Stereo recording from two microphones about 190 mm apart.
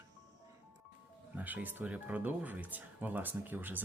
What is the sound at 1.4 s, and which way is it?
Speech, 10° right (ahead or behind).